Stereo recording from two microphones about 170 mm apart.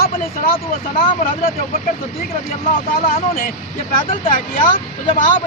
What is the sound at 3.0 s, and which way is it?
Speech, 55° left (ahead or behind).